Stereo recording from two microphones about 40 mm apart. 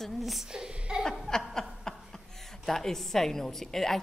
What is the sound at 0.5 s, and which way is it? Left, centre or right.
Speech, right.